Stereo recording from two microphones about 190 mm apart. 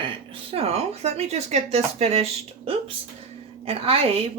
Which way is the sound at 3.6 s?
30° right (ahead or behind).